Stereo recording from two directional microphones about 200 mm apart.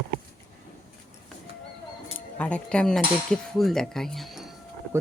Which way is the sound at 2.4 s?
5° left (ahead or behind).